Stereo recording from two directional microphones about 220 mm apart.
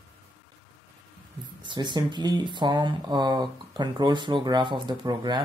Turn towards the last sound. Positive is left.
turn(degrees=-20)  # may be behind; listen again after turning